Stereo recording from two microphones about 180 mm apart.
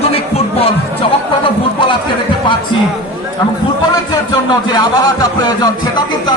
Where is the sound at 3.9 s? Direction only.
20° left (ahead or behind).